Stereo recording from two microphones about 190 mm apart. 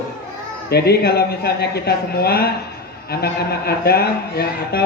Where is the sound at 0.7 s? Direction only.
55° left (ahead or behind).